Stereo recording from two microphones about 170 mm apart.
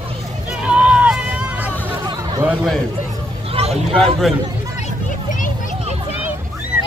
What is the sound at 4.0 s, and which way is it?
Speech, centre (ahead or behind).